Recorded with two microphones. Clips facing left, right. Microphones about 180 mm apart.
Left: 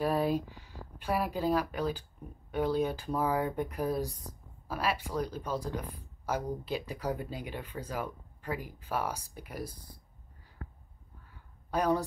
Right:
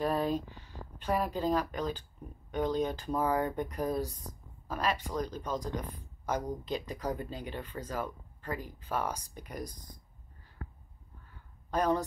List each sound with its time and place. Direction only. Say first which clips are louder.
0.0 s speech: left 1 dB; 10° left (ahead or behind)
11.7 s speech: even; 10° left (ahead or behind)